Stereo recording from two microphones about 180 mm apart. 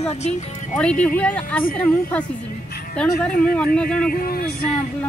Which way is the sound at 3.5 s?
5° left (ahead or behind).